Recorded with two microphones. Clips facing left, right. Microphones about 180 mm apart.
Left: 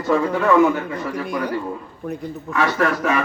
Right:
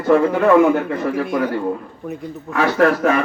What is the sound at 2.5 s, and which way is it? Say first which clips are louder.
Speech: right 5 dB; 50° right (ahead or behind).